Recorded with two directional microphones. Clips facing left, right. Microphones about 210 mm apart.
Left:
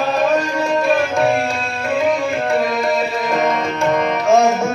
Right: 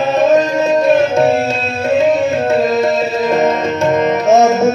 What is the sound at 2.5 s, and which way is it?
Music, 25° right (ahead or behind).